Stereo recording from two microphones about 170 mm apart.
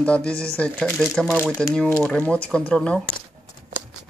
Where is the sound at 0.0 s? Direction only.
5° left (ahead or behind).